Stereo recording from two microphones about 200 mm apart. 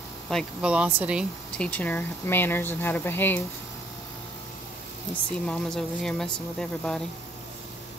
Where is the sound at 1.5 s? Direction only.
5° left (ahead or behind).